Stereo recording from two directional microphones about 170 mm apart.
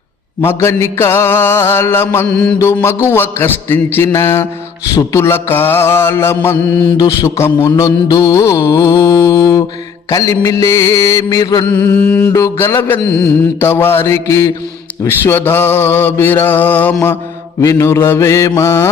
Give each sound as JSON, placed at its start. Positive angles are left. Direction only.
{"t": 0.4, "sound": "mantra", "side_deg": 15}
{"t": 11.6, "sound": "mantra", "side_deg": 10}